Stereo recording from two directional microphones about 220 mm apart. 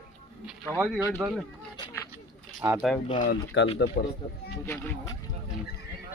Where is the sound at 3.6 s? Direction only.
50° left (ahead or behind).